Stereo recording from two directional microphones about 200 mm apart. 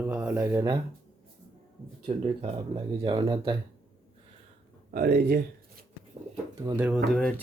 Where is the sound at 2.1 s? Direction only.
30° right (ahead or behind).